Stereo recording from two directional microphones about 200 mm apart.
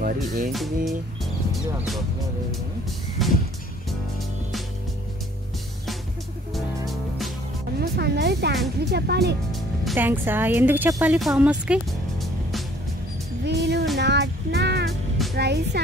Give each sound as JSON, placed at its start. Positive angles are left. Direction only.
{"t": 0.0, "sound": "music", "side_deg": -45}
{"t": 0.8, "sound": "speech", "side_deg": 0}
{"t": 3.2, "sound": "music", "side_deg": 0}
{"t": 6.9, "sound": "music", "side_deg": 0}
{"t": 7.8, "sound": "music", "side_deg": -55}
{"t": 8.8, "sound": "speech", "side_deg": -55}
{"t": 9.9, "sound": "a woman's voice", "side_deg": -10}
{"t": 13.5, "sound": "speech", "side_deg": -55}